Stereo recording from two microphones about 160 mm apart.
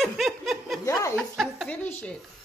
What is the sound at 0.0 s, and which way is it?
Snicker, centre (ahead or behind).